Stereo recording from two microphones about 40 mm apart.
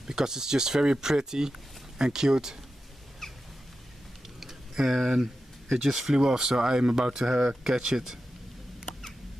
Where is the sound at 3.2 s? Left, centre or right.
Centre.